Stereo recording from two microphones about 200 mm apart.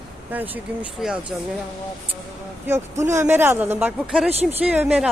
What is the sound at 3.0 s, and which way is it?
A man's voice, 15° right (ahead or behind).